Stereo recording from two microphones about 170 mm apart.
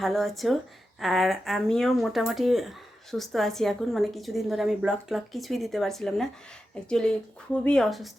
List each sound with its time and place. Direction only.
0.0 s speech: centre (ahead or behind)
7.6 s speech: 5° left (ahead or behind)